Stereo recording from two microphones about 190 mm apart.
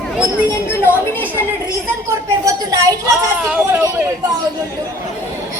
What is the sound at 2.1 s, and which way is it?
Speech, 20° right (ahead or behind).